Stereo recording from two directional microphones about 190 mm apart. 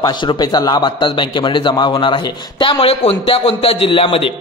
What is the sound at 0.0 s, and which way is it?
A man's voice, 25° left (ahead or behind).